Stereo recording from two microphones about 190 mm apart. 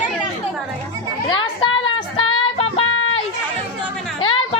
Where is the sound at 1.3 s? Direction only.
30° left (ahead or behind).